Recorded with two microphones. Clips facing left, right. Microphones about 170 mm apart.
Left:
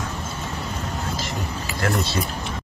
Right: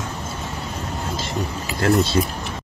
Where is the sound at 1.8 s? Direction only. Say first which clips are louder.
Right 6 dB; 25° right (ahead or behind).